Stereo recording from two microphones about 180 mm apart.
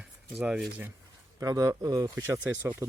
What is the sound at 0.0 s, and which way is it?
Speech, 5° right (ahead or behind).